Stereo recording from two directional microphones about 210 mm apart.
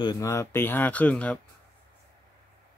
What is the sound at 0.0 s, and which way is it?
Speech, 15° left (ahead or behind).